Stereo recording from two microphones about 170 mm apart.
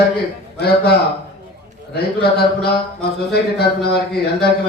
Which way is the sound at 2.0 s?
70° left (ahead or behind).